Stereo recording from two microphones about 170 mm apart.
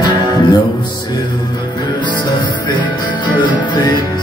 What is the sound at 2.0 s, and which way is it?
Music, 25° left (ahead or behind).